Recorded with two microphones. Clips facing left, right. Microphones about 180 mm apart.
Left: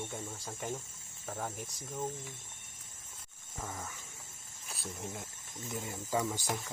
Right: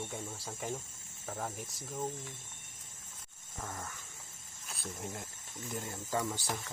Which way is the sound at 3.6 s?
5° left (ahead or behind).